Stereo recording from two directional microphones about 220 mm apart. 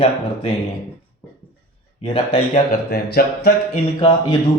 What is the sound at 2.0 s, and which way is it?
Speech, 25° left (ahead or behind).